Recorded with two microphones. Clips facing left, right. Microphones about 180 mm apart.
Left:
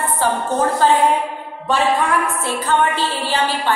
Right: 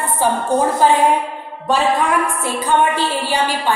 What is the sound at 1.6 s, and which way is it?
A woman's voice, 10° right (ahead or behind).